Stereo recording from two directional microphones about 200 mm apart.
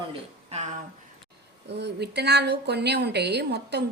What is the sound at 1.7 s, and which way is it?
A woman's voice, 55° right (ahead or behind).